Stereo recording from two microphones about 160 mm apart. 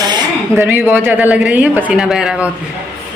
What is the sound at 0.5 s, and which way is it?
Speech, 10° right (ahead or behind).